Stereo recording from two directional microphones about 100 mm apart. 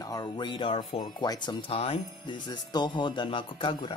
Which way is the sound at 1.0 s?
50° left (ahead or behind).